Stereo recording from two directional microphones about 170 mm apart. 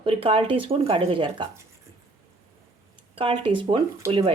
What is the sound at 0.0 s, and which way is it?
Speech, 35° right (ahead or behind).